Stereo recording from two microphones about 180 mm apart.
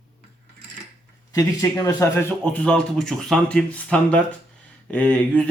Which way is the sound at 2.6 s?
5° left (ahead or behind).